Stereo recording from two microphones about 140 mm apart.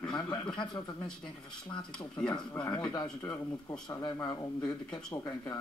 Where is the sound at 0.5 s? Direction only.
35° left (ahead or behind).